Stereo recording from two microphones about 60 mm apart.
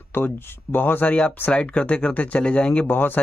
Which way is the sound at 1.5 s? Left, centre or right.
Centre.